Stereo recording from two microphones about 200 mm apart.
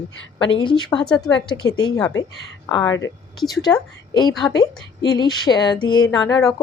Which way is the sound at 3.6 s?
20° left (ahead or behind).